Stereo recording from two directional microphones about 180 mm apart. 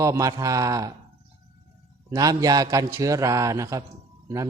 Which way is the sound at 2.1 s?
20° right (ahead or behind).